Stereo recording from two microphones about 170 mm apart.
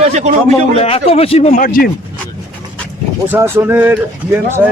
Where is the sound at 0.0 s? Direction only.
40° right (ahead or behind).